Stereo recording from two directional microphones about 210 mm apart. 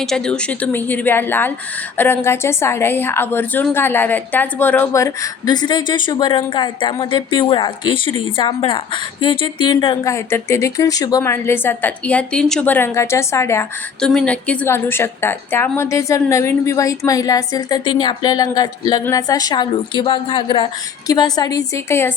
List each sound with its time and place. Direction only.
0.0 s a woman's voice: 5° left (ahead or behind)